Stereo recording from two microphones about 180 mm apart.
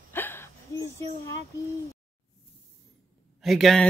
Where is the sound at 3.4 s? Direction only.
Centre (ahead or behind).